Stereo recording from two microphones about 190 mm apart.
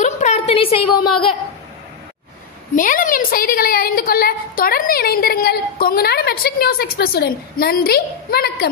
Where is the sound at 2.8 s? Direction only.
45° left (ahead or behind).